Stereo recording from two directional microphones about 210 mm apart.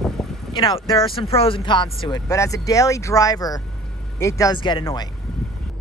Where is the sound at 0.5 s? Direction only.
20° left (ahead or behind).